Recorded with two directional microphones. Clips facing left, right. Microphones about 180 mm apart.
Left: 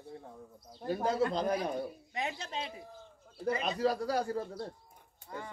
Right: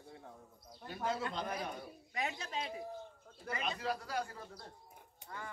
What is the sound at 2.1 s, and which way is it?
Speech, 25° left (ahead or behind).